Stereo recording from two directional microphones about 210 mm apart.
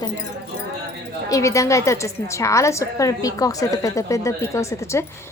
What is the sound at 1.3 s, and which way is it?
A woman's voice, 15° left (ahead or behind).